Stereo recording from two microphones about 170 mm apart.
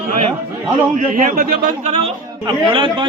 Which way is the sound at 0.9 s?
50° right (ahead or behind).